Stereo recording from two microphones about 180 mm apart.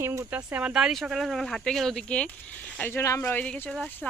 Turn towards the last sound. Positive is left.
turn(degrees=10)  # may be behind; listen again after turning